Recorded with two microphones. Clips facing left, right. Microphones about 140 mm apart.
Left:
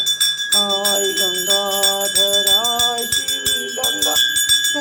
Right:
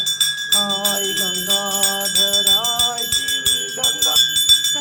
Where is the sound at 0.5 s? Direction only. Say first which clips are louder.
Left 4 dB; 15° left (ahead or behind).